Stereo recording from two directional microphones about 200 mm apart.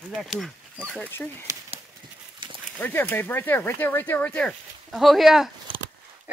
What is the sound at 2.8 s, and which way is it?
Speech, 10° left (ahead or behind).